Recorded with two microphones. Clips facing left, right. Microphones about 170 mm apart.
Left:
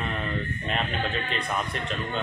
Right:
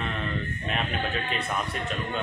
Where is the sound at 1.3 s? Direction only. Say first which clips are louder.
Left 1 dB; centre (ahead or behind).